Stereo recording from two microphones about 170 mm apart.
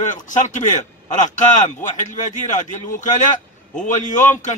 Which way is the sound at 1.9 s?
45° left (ahead or behind).